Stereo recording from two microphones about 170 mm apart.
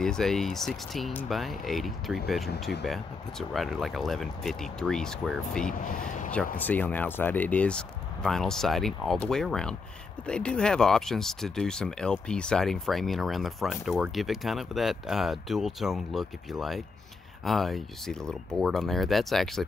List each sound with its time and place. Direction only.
0.0 s speech: 5° left (ahead or behind)
5.9 s speech: 50° left (ahead or behind)
6.5 s speech: 10° left (ahead or behind)